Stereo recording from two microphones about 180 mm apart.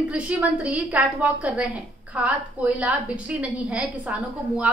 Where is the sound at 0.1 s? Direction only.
5° right (ahead or behind).